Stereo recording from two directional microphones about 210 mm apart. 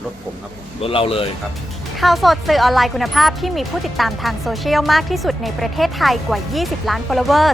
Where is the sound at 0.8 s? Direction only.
25° left (ahead or behind).